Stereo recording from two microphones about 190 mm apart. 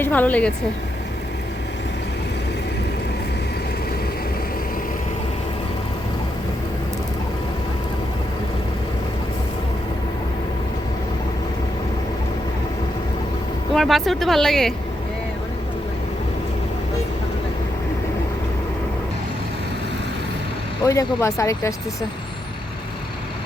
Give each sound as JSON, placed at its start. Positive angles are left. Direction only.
{"t": 0.0, "sound": "speech", "side_deg": 10}
{"t": 13.7, "sound": "speech", "side_deg": 0}
{"t": 20.8, "sound": "speech", "side_deg": 15}